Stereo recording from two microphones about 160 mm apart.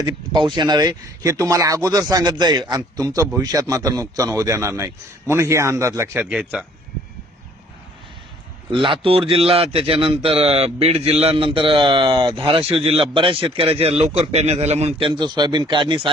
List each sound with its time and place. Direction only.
0.0 s a man's voice: 25° right (ahead or behind); by 6.7 s 5° right (ahead or behind)
8.7 s a man's voice: 30° right (ahead or behind)